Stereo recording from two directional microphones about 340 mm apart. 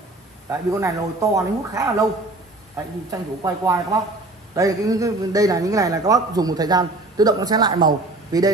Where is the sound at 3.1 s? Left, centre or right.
Centre.